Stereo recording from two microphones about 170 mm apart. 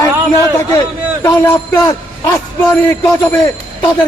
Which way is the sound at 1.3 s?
15° left (ahead or behind).